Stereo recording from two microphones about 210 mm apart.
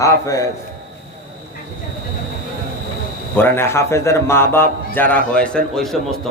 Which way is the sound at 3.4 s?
10° left (ahead or behind).